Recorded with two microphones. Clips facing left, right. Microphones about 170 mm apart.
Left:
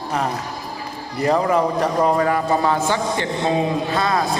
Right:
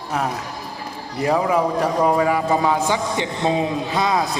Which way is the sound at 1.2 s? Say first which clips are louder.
Left 1 dB; 5° right (ahead or behind).